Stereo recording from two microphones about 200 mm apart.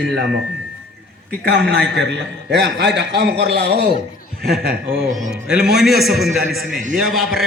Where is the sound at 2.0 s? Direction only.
60° right (ahead or behind).